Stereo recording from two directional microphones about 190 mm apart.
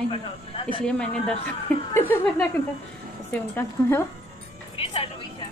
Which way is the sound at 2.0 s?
10° left (ahead or behind).